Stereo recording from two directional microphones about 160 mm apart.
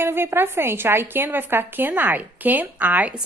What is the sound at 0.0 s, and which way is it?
A woman's voice, 15° right (ahead or behind).